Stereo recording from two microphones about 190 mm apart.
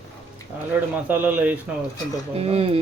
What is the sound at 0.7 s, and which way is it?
Speech, 10° right (ahead or behind).